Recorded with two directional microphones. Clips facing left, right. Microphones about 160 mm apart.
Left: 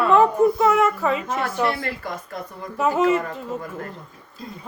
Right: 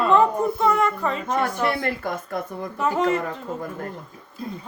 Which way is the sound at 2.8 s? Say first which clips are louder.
Left 3 dB; 5° left (ahead or behind).